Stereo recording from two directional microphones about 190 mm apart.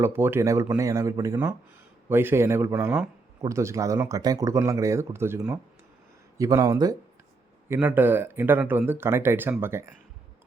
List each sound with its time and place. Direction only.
0.0 s speech: 10° right (ahead or behind)